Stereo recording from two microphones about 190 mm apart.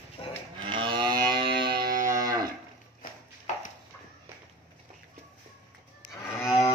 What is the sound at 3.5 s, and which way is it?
Clip-clop, 40° left (ahead or behind).